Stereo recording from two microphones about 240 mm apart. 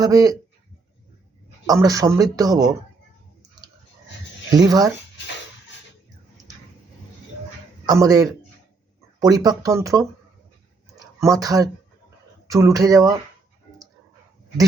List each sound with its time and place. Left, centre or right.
0.0 s speech: centre
1.6 s speech: centre
4.5 s speech: centre
7.9 s speech: centre
11.2 s speech: centre